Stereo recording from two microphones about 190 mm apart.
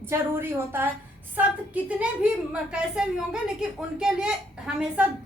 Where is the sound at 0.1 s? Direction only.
10° right (ahead or behind).